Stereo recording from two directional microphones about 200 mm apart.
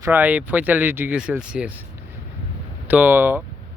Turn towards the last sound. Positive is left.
turn(degrees=-10)  # may be behind; listen again after turning